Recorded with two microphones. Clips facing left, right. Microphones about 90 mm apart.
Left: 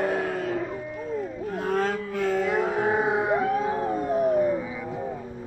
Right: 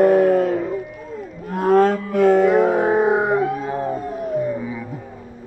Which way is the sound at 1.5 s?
55° right (ahead or behind).